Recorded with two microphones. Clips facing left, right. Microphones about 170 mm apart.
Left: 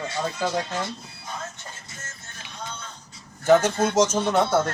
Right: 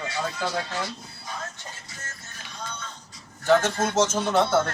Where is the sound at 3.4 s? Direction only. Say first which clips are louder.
Left 3 dB; 15° left (ahead or behind).